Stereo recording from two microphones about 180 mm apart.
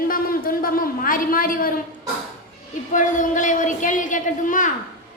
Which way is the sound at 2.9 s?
45° left (ahead or behind).